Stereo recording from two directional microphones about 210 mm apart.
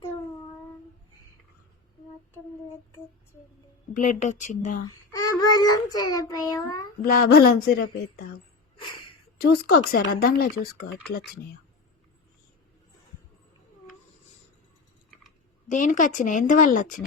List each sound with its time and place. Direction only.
3.9 s speech: 35° left (ahead or behind)
5.1 s a child's voice: 20° left (ahead or behind)
7.0 s speech: 45° left (ahead or behind)
9.4 s speech: 45° left (ahead or behind)
15.7 s speech: 35° left (ahead or behind)